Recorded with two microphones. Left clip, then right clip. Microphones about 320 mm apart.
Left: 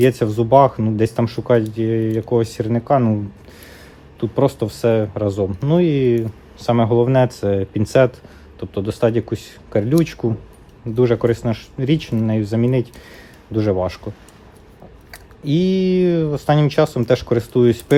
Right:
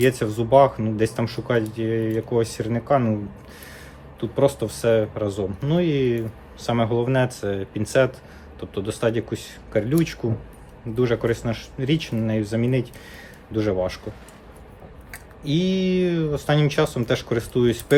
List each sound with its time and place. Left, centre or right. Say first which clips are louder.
0.0 s speech: left 5 dB; left
4.2 s speech: left 3 dB; left
15.1 s speech: left 5 dB; left